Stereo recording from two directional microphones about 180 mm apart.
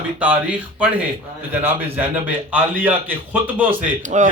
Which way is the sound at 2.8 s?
10° right (ahead or behind).